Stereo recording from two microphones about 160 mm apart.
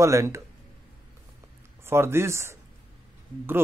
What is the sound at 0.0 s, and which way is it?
Speech, 20° right (ahead or behind).